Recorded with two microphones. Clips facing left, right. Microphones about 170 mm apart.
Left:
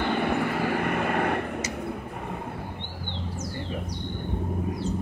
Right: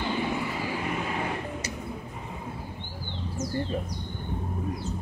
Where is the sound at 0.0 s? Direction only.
60° left (ahead or behind).